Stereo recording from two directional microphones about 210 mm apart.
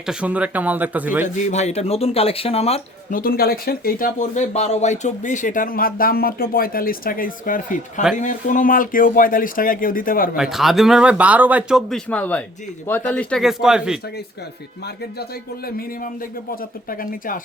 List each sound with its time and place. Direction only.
0.0 s speech: 5° right (ahead or behind)
1.5 s speech: 35° left (ahead or behind)
3.2 s speech: 45° left (ahead or behind)
10.3 s speech: centre (ahead or behind)
14.8 s speech: 45° left (ahead or behind)